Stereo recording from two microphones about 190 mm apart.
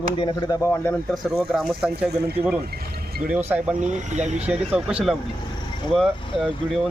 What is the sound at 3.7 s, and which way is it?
Speech, 40° right (ahead or behind).